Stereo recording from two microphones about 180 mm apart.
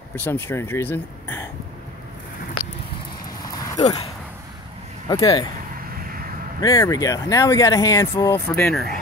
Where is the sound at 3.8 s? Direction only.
20° left (ahead or behind).